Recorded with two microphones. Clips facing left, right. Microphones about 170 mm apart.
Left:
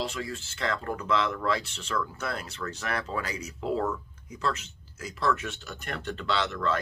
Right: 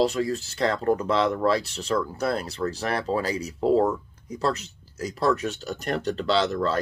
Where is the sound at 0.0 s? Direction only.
40° right (ahead or behind).